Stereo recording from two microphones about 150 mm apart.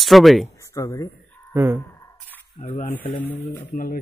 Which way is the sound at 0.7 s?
20° left (ahead or behind).